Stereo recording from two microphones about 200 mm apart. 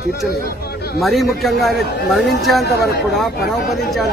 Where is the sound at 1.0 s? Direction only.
Centre (ahead or behind).